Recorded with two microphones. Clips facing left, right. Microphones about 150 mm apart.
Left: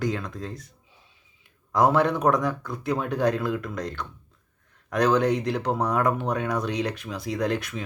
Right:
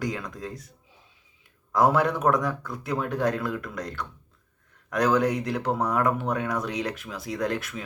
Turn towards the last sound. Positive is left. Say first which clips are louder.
# left 2 dB
turn(degrees=0)  # may be behind; listen again after turning